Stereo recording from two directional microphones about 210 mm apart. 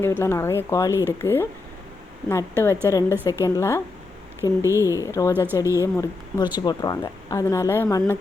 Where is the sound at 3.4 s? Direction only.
15° left (ahead or behind).